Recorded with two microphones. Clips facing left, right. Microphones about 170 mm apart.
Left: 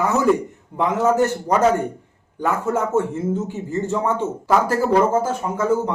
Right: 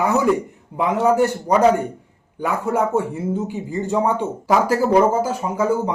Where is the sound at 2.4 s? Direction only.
15° right (ahead or behind).